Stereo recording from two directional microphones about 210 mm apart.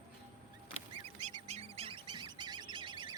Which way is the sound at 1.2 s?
30° right (ahead or behind).